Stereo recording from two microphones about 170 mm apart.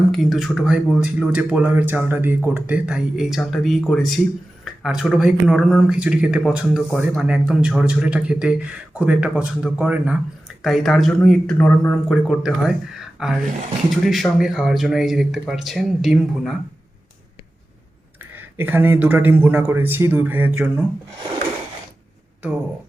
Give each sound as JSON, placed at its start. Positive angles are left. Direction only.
{"t": 0.1, "sound": "a man's voice", "side_deg": 0}
{"t": 12.0, "sound": "speech", "side_deg": 0}
{"t": 18.3, "sound": "a man's voice", "side_deg": -10}